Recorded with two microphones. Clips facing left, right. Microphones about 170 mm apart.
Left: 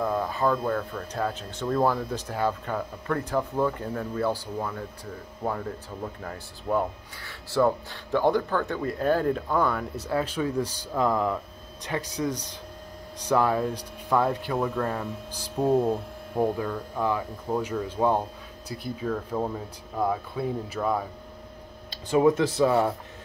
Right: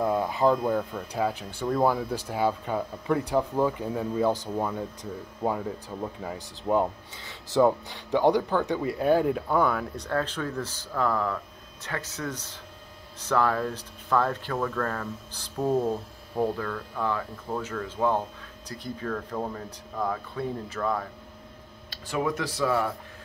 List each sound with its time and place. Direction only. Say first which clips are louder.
0.0 s speech: right 2 dB; 15° right (ahead or behind); by 21.1 s 10° left (ahead or behind)
22.1 s speech: left 8 dB; 25° left (ahead or behind)